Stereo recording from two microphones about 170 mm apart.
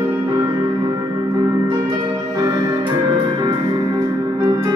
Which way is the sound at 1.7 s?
20° right (ahead or behind).